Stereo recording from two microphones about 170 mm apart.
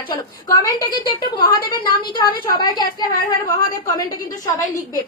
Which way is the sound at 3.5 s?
20° left (ahead or behind).